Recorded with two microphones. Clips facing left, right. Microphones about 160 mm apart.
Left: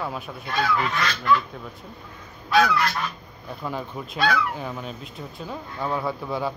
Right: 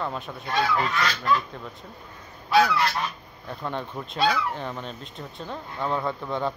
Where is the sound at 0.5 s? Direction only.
35° right (ahead or behind).